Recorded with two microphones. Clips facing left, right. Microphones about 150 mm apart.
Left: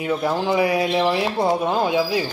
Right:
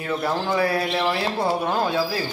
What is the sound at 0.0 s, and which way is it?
Speech, 15° left (ahead or behind).